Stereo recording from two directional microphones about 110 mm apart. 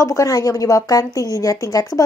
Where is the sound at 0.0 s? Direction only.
30° left (ahead or behind).